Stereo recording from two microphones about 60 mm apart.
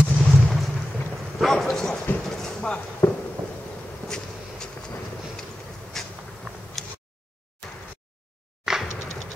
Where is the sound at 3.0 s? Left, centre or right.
Left.